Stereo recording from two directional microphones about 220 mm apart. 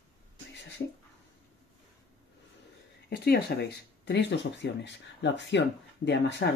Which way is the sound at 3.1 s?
45° left (ahead or behind).